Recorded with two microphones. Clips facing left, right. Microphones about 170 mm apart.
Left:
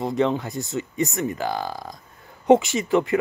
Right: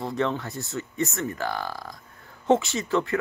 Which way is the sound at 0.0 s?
15° left (ahead or behind).